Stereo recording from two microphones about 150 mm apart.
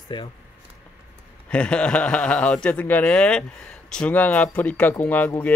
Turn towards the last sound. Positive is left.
turn(degrees=10)  # may be behind; listen again after turning